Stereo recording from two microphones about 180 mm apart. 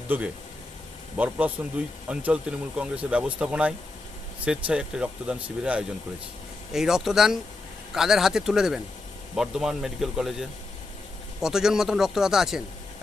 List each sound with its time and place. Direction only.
0.1 s speech: 10° right (ahead or behind)